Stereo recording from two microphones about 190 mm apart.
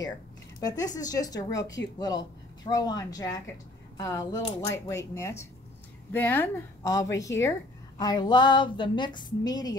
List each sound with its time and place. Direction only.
0.6 s a woman's voice: 20° left (ahead or behind)
2.6 s a woman's voice: 20° left (ahead or behind)
4.4 s speech: 30° left (ahead or behind)
4.6 s a woman's voice: 15° left (ahead or behind)